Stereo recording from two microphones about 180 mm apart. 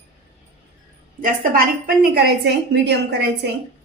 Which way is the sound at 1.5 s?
60° right (ahead or behind).